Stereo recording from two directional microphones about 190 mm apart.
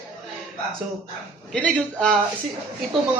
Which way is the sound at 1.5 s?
5° left (ahead or behind).